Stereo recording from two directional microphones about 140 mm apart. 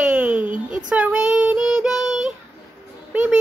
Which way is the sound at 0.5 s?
70° right (ahead or behind).